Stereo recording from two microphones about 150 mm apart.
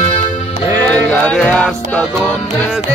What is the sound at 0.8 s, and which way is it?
Music, 10° left (ahead or behind).